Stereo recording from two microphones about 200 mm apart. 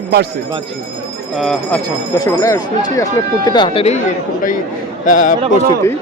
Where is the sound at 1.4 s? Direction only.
Centre (ahead or behind).